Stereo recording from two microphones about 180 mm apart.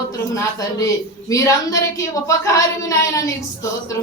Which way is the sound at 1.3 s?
15° left (ahead or behind).